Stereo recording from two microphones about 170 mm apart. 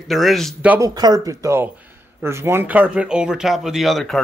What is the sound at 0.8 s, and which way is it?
Speech, 25° right (ahead or behind).